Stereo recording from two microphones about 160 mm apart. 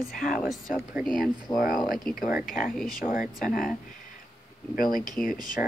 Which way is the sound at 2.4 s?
55° left (ahead or behind).